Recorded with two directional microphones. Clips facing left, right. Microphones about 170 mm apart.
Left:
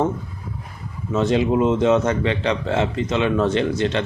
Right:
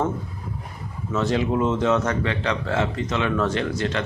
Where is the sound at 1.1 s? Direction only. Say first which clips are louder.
Left 4 dB; 20° left (ahead or behind).